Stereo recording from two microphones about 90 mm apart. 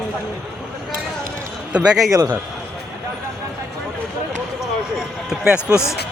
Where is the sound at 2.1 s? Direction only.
45° right (ahead or behind).